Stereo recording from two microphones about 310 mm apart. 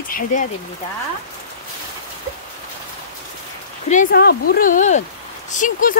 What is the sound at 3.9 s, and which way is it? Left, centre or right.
Speech, left.